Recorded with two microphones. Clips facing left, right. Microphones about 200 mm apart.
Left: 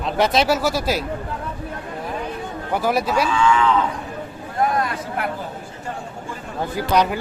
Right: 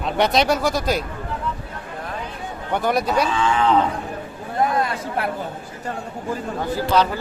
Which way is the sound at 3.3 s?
35° right (ahead or behind).